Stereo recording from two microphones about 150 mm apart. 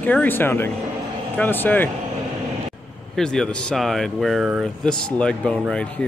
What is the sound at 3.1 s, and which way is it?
Speech, 5° left (ahead or behind).